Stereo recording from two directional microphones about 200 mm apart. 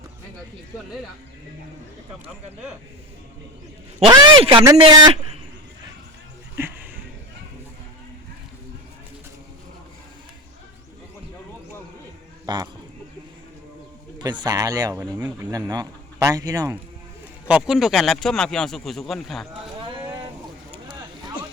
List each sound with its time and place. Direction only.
4.0 s a man's voice: 25° right (ahead or behind)
6.6 s music: 10° right (ahead or behind)
12.5 s speech: 20° right (ahead or behind)
14.2 s a man's voice: 20° right (ahead or behind)
17.5 s speech: centre (ahead or behind)